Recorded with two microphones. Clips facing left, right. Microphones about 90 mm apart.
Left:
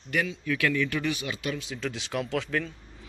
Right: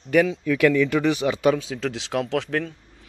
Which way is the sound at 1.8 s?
90° right.